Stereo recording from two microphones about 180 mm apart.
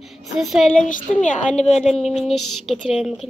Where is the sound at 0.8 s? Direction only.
45° left (ahead or behind).